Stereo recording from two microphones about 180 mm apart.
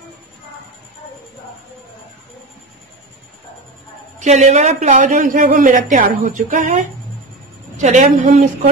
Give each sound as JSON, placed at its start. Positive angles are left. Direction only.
{"t": 4.2, "sound": "a woman's voice", "side_deg": -40}